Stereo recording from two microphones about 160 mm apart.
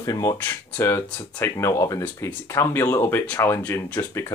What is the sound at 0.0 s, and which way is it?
Speech, 20° left (ahead or behind).